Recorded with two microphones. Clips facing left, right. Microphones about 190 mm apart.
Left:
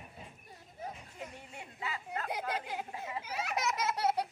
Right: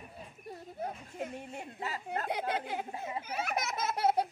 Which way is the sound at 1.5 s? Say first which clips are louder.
Right 3 dB; 40° right (ahead or behind).